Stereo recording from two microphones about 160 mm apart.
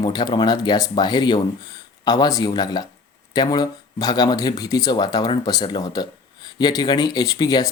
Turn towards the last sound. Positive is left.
turn(degrees=25)  # may be behind; listen again after turning